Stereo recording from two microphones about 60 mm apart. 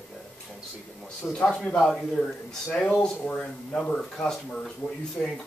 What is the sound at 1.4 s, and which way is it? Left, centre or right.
Speech, centre.